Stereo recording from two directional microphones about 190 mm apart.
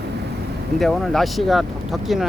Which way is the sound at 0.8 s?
Centre (ahead or behind).